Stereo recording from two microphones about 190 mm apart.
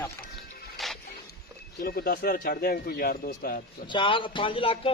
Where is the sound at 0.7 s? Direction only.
Centre (ahead or behind).